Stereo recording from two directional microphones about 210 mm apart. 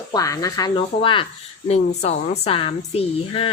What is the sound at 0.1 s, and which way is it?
Speech, 15° left (ahead or behind).